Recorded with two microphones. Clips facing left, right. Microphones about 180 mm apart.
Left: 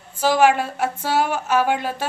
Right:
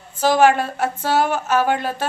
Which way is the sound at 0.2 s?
10° left (ahead or behind).